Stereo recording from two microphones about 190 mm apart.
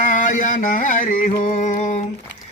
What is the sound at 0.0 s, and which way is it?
Music, 45° left (ahead or behind).